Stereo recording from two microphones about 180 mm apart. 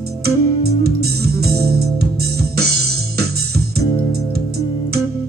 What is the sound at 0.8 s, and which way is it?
Music, 60° right (ahead or behind).